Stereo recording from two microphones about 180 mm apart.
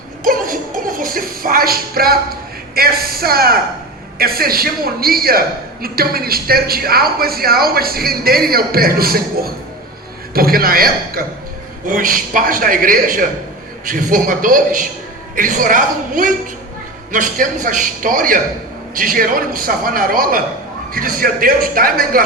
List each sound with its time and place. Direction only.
0.3 s music: 50° right (ahead or behind)
4.2 s a woman's voice: 55° right (ahead or behind)